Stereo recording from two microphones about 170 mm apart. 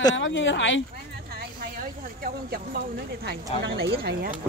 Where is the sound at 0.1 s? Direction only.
90° left.